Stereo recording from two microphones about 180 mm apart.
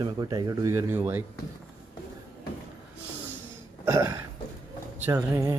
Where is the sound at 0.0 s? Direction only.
25° right (ahead or behind).